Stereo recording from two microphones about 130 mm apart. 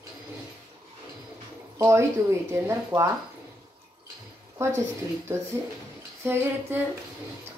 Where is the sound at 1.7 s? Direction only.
20° right (ahead or behind).